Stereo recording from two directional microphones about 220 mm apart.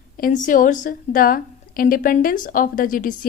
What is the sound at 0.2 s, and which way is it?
Speech, 35° left (ahead or behind).